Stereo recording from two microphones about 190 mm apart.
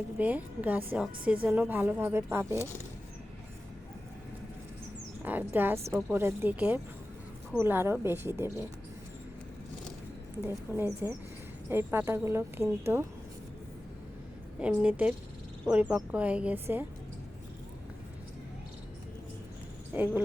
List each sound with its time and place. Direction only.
0.2 s a woman's voice: 10° right (ahead or behind)
5.2 s a woman's voice: 10° right (ahead or behind)
10.4 s a woman's voice: 10° right (ahead or behind)
14.6 s a woman's voice: 10° right (ahead or behind)
19.9 s speech: 10° right (ahead or behind)